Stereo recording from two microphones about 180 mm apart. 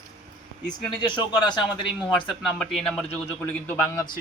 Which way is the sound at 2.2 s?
Centre (ahead or behind).